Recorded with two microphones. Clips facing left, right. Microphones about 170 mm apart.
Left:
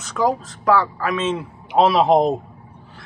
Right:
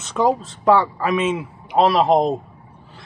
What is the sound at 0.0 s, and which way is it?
Speech, 25° right (ahead or behind).